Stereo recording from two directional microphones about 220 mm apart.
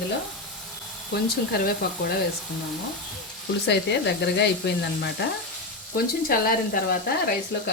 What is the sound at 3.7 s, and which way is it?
Frying, 50° left (ahead or behind).